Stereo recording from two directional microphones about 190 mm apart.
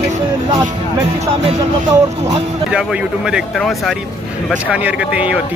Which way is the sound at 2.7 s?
5° right (ahead or behind).